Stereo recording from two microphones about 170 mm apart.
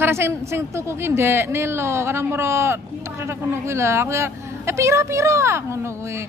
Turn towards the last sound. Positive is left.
turn(degrees=-15)  # may be behind; listen again after turning